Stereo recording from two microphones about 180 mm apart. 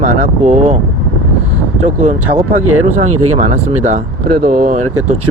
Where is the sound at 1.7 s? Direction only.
40° right (ahead or behind).